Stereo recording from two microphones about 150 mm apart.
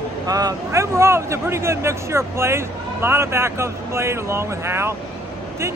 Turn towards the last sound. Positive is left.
turn(degrees=-15)  # may be behind; listen again after turning